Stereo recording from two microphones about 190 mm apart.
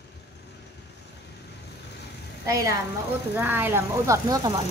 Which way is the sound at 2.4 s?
15° right (ahead or behind).